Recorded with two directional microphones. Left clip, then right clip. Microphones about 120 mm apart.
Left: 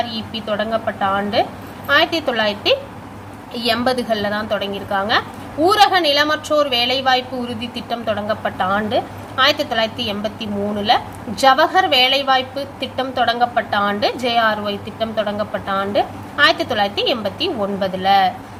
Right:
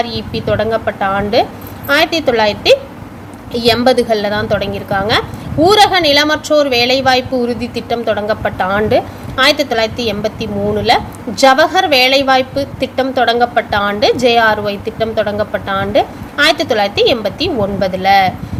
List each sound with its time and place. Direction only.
0.0 s a woman's voice: 50° right (ahead or behind)